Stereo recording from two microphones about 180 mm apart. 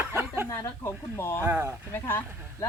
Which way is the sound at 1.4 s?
10° right (ahead or behind).